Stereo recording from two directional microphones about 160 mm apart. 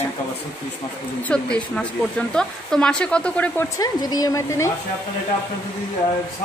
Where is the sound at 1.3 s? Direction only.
5° left (ahead or behind).